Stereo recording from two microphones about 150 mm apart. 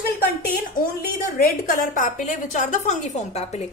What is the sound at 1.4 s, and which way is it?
A woman's voice, 70° left (ahead or behind).